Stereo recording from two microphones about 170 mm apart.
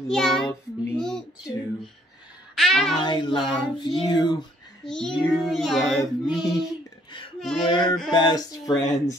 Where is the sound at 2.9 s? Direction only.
30° left (ahead or behind).